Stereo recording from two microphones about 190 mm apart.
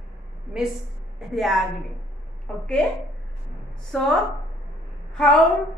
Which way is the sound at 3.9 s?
5° left (ahead or behind).